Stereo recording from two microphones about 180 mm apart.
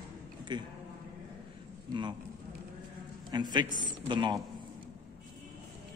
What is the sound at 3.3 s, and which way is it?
A man's voice, 25° right (ahead or behind).